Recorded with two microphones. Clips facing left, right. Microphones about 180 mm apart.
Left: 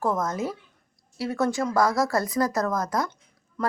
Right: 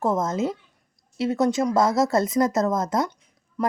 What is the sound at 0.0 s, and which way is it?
Speech, 25° right (ahead or behind).